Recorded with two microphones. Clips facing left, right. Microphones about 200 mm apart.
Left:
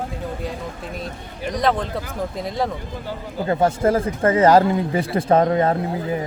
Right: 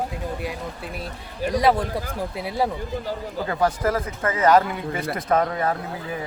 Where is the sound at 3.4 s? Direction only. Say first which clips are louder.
Left 5 dB; 25° left (ahead or behind).